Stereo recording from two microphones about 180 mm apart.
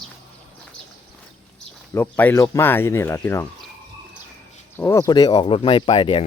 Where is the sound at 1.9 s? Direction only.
10° left (ahead or behind).